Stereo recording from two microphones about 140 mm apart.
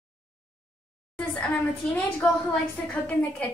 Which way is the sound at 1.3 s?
10° left (ahead or behind).